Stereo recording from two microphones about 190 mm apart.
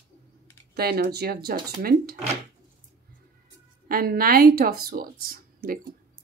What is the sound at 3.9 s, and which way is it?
A woman's voice, 50° right (ahead or behind).